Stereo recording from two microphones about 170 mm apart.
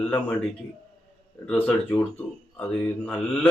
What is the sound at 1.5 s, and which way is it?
Speech, 10° left (ahead or behind).